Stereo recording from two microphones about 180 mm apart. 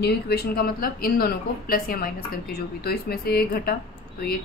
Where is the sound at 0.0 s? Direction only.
60° left (ahead or behind).